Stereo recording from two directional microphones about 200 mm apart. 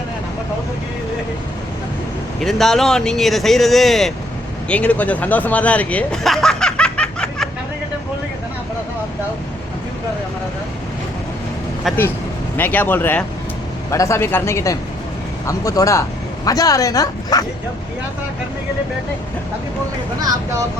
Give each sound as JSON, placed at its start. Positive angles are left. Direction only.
{"t": 2.4, "sound": "speech", "side_deg": 0}
{"t": 12.5, "sound": "speech", "side_deg": 10}
{"t": 20.1, "sound": "speech", "side_deg": -15}